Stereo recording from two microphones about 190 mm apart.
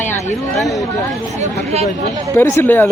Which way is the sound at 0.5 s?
Centre (ahead or behind).